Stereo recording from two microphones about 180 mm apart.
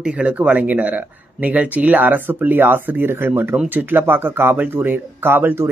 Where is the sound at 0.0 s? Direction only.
5° right (ahead or behind).